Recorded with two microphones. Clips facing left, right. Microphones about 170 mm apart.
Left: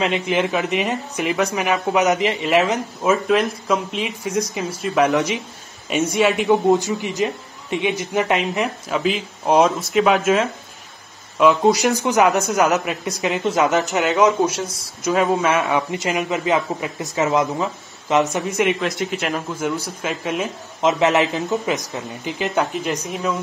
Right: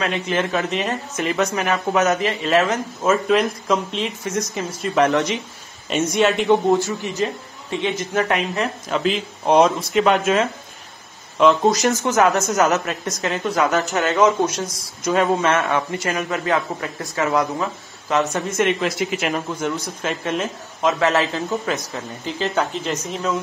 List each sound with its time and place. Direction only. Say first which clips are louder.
0.0 s speech: left 2 dB; 15° left (ahead or behind)
3.0 s speech: even; centre (ahead or behind)
6.7 s speech: left 1 dB; 15° left (ahead or behind)
8.9 s speech: right 1 dB; 5° left (ahead or behind)
18.8 s speech: right 1 dB; centre (ahead or behind)
20.8 s speech: left 2 dB; 20° left (ahead or behind)